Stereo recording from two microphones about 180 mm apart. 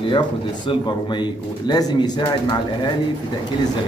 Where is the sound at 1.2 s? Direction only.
25° left (ahead or behind).